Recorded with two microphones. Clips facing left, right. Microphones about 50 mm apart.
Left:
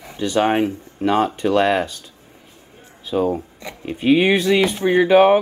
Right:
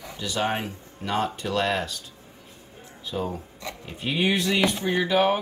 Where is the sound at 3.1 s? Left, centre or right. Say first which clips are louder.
Left 11 dB; left.